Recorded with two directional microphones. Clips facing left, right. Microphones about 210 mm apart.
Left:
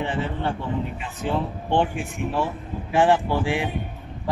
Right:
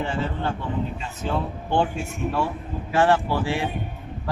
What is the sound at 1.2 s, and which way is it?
Speech, 15° left (ahead or behind).